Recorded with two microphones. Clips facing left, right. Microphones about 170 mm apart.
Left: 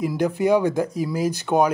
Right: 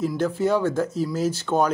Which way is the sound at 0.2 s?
15° left (ahead or behind).